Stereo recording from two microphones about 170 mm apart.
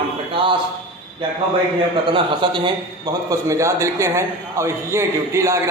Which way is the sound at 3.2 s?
15° right (ahead or behind).